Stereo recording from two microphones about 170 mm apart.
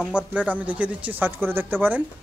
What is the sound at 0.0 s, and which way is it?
Speech, 5° right (ahead or behind).